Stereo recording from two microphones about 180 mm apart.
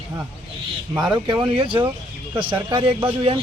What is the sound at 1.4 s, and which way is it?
Speech, 30° right (ahead or behind).